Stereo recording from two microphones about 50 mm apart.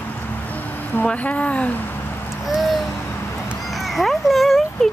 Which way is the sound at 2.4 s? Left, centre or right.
Centre.